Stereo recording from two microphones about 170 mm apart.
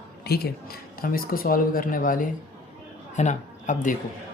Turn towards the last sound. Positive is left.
turn(degrees=50)  # may be behind; listen again after turning